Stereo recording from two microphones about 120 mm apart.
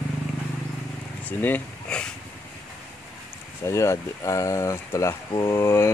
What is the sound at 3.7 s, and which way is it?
Speech, 25° left (ahead or behind).